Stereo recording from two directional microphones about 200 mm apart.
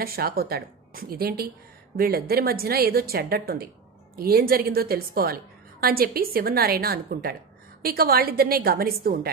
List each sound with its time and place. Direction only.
0.0 s a woman's voice: 50° right (ahead or behind)